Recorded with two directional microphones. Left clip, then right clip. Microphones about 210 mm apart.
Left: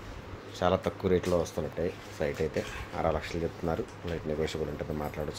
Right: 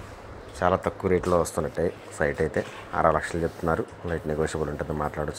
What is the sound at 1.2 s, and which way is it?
Speech, 25° right (ahead or behind).